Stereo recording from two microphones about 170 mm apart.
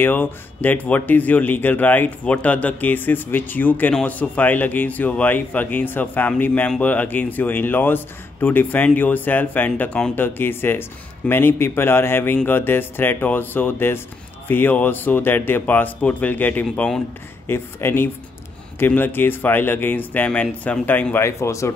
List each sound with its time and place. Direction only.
0.0 s speech: 10° left (ahead or behind)